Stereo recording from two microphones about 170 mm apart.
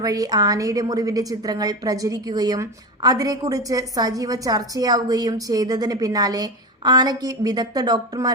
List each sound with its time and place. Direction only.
0.0 s a woman's voice: 20° right (ahead or behind)